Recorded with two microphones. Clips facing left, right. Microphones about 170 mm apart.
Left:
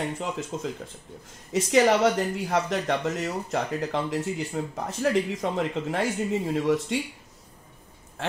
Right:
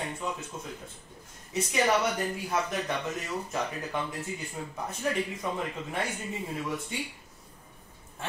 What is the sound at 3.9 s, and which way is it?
Speech, 90° left.